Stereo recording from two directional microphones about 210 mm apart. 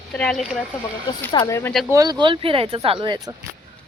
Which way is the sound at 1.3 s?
15° left (ahead or behind).